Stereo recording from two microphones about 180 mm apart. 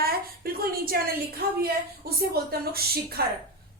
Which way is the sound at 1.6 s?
60° right (ahead or behind).